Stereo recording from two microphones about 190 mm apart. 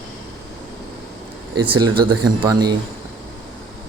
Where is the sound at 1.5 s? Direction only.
25° right (ahead or behind).